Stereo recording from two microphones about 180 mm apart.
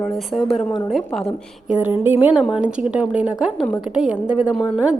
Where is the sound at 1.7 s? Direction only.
10° right (ahead or behind).